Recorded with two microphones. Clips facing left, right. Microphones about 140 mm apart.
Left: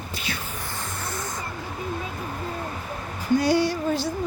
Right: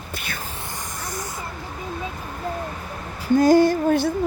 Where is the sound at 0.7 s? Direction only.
15° right (ahead or behind).